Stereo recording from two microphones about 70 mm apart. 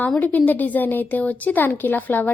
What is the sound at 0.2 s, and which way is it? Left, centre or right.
Speech, left.